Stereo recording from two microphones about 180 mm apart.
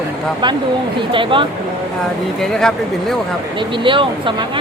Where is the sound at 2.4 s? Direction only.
Centre (ahead or behind).